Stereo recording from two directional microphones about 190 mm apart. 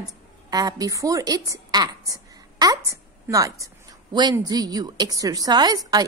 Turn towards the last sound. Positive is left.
turn(degrees=-20)  # may be behind; listen again after turning